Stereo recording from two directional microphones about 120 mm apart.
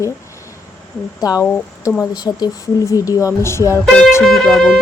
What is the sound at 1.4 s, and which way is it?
Speech, 15° left (ahead or behind).